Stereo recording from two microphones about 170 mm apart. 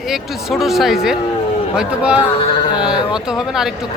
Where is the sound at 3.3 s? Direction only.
Centre (ahead or behind).